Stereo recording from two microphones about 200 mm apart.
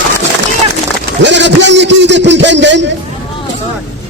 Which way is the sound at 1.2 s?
60° right (ahead or behind).